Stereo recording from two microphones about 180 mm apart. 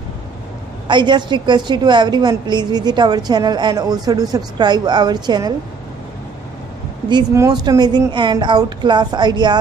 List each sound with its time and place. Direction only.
0.8 s a woman's voice: 25° right (ahead or behind)
7.1 s a woman's voice: 20° right (ahead or behind)